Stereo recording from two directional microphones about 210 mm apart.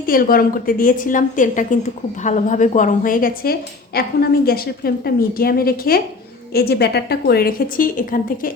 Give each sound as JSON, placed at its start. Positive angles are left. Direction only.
{"t": 0.0, "sound": "a woman's voice", "side_deg": 45}